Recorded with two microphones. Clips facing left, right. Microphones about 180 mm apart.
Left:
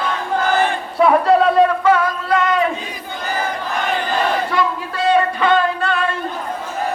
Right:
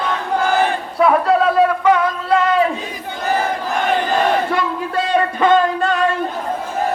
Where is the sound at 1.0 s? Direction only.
Centre (ahead or behind).